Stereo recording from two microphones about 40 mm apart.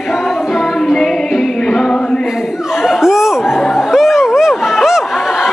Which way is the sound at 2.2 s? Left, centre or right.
Centre.